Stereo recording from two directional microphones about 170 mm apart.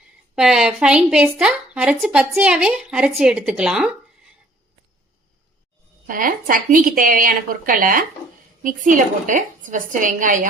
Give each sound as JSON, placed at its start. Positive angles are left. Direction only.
{"t": 0.3, "sound": "a woman's voice", "side_deg": -5}
{"t": 6.1, "sound": "a woman's voice", "side_deg": -55}